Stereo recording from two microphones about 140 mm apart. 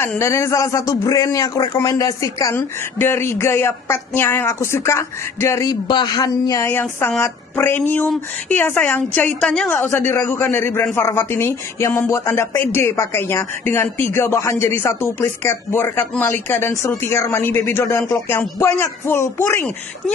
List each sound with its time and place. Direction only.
0.2 s speech: 20° left (ahead or behind)
6.7 s speech: 15° left (ahead or behind)
9.8 s speech: 20° left (ahead or behind)